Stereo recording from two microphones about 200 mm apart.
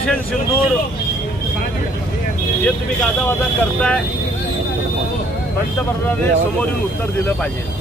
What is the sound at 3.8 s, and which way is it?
Speech, 5° left (ahead or behind).